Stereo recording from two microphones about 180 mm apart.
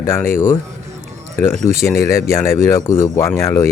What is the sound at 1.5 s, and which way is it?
Speech, 40° right (ahead or behind).